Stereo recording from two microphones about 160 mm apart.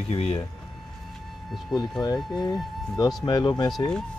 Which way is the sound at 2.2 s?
Centre (ahead or behind).